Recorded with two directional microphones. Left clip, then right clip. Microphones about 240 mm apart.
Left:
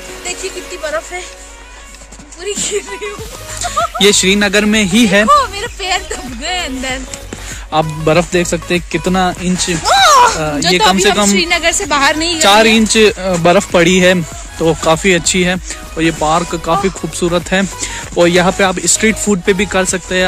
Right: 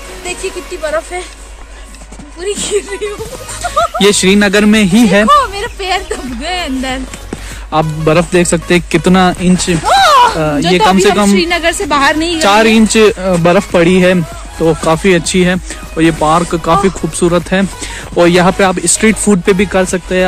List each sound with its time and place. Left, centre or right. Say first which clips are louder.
0.8 s speech: right 4 dB; centre
2.4 s speech: right 3 dB; centre
4.0 s speech: even; centre
9.8 s a sound: right 1 dB; left
11.3 s a woman's voice: right 1 dB; left
12.4 s speech: even; centre